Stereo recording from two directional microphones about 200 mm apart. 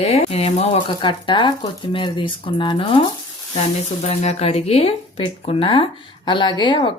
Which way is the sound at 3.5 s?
35° left (ahead or behind).